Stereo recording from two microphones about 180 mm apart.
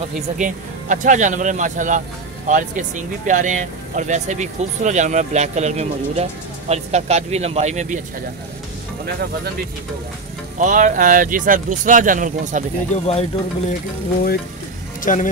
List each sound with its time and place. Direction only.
0.4 s speech: 45° right (ahead or behind)
10.6 s speech: 45° right (ahead or behind)
12.9 s speech: 35° left (ahead or behind)
15.1 s speech: 45° left (ahead or behind)